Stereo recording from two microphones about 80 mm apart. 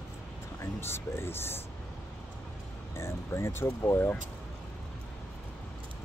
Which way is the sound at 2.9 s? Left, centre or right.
Left.